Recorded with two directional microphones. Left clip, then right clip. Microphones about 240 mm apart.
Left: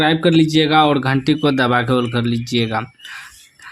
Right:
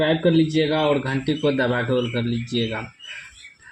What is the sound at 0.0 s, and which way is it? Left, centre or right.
Speech, left.